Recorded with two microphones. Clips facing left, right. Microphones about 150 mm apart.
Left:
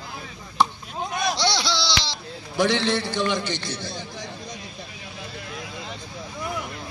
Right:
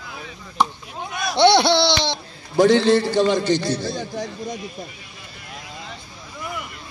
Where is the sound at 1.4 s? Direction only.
60° right (ahead or behind).